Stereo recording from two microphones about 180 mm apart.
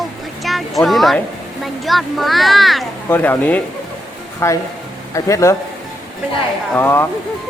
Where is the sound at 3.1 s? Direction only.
15° left (ahead or behind).